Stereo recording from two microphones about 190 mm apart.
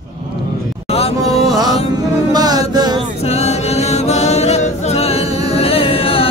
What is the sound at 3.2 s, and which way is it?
A capella, 35° left (ahead or behind).